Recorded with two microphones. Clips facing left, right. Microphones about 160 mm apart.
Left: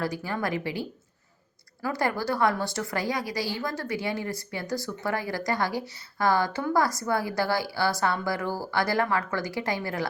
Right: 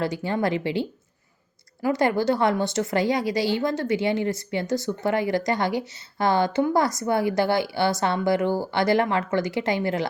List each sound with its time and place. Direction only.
0.0 s a woman's voice: 25° right (ahead or behind)